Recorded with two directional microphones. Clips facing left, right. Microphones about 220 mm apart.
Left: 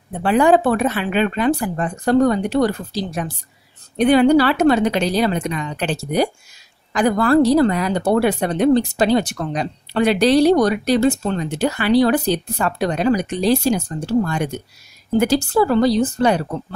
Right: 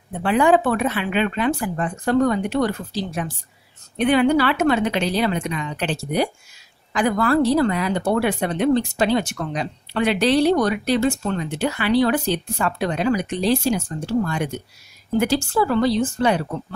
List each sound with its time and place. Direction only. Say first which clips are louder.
0.2 s speech: left 3 dB; 40° left (ahead or behind)